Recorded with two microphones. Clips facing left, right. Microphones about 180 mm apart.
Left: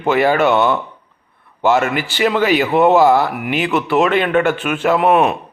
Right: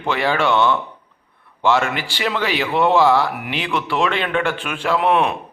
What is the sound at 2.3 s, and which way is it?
A man's voice, 45° left (ahead or behind).